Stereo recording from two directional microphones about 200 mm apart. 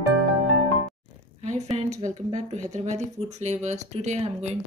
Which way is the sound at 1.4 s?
35° right (ahead or behind).